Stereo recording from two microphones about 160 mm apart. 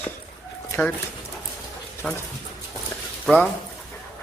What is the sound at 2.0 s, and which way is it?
Speech, 5° left (ahead or behind).